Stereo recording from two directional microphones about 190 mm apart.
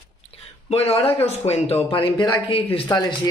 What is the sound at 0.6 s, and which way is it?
Speech, 30° left (ahead or behind).